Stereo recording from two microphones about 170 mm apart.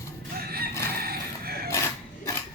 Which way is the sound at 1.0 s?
65° right (ahead or behind).